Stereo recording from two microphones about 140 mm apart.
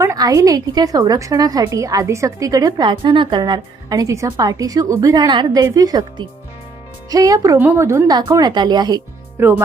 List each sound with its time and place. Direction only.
0.0 s a woman's voice: 25° right (ahead or behind)